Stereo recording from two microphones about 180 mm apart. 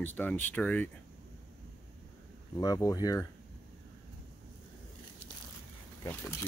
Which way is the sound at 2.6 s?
20° left (ahead or behind).